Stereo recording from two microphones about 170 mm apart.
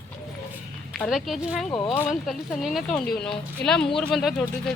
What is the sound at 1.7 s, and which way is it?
Speech, 30° left (ahead or behind).